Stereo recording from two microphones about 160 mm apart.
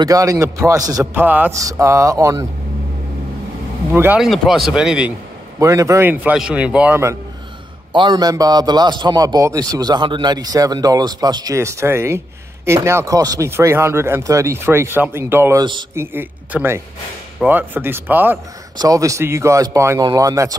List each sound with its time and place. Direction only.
0.0 s a man's voice: 20° right (ahead or behind)
1.2 s a man's voice: 10° right (ahead or behind)
3.9 s speech: 15° right (ahead or behind)
4.2 s speech: centre (ahead or behind)
5.6 s speech: 20° right (ahead or behind)
7.9 s a man's voice: 25° right (ahead or behind)